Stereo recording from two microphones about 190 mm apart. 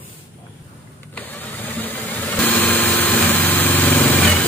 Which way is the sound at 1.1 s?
10° left (ahead or behind).